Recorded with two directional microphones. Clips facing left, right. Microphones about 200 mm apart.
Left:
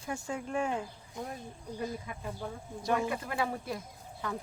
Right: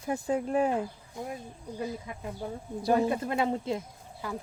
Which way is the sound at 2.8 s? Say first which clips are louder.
Right 6 dB; 35° right (ahead or behind).